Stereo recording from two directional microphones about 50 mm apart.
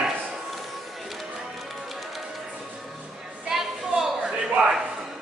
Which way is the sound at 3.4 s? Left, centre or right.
Centre.